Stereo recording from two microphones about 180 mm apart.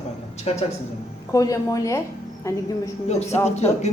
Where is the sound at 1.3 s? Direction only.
20° left (ahead or behind).